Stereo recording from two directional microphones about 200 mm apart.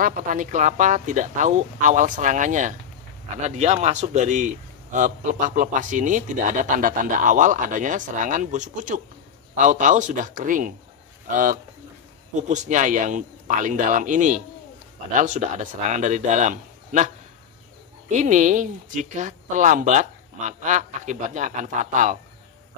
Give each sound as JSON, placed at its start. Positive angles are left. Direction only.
{"t": 0.0, "sound": "a man's voice", "side_deg": -40}
{"t": 18.1, "sound": "a man's voice", "side_deg": -35}